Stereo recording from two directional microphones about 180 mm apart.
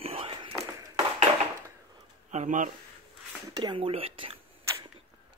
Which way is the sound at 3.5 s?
25° right (ahead or behind).